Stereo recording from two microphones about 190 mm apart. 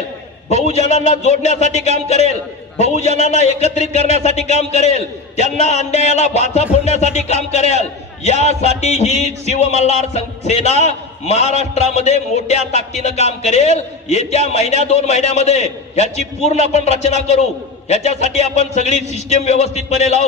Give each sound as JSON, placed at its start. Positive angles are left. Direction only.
{"t": 0.7, "sound": "a man's voice", "side_deg": 35}